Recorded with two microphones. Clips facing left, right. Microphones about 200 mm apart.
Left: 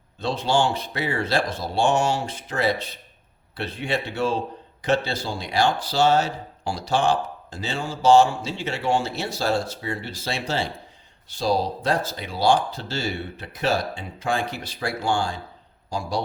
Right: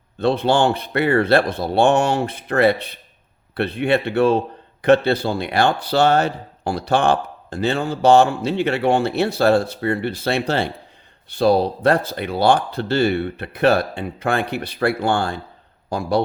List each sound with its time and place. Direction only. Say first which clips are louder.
0.2 s a man's voice: right 5 dB; 60° right (ahead or behind)